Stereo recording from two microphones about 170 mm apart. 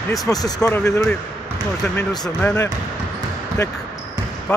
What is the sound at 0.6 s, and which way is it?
Speech, 5° left (ahead or behind).